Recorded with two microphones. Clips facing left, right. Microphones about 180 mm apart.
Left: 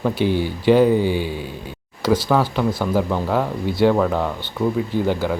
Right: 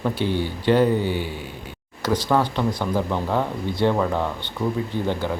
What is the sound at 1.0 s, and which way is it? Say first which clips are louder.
Speech: left 4 dB; 90° left.